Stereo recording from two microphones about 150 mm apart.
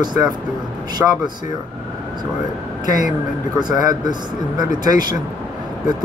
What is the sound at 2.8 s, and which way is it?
Speech, 60° left (ahead or behind).